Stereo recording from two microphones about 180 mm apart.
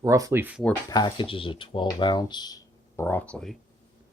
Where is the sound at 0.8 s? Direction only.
25° left (ahead or behind); by 3.6 s 5° left (ahead or behind).